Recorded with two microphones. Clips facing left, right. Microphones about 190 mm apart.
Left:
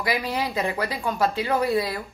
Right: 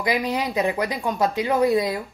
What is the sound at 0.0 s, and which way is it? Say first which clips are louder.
A woman's voice: right 3 dB; 20° right (ahead or behind).